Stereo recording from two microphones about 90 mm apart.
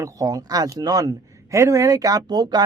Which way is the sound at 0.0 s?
40° right (ahead or behind).